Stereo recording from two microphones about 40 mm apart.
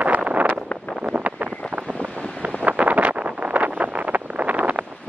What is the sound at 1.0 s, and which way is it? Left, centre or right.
Wind noise, right.